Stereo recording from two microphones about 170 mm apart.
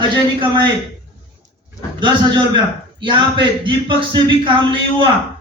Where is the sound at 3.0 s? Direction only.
30° right (ahead or behind).